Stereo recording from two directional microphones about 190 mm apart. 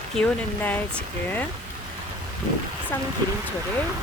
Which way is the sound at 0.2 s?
10° left (ahead or behind).